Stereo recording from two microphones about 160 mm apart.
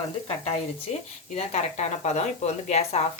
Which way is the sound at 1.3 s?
45° left (ahead or behind).